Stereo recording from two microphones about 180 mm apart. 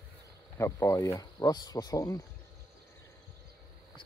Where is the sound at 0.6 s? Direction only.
15° left (ahead or behind).